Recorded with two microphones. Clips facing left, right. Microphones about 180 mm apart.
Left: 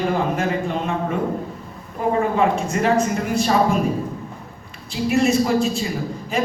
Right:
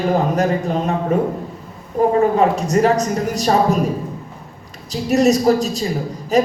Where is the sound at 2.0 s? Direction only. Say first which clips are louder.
Right 5 dB; 40° right (ahead or behind).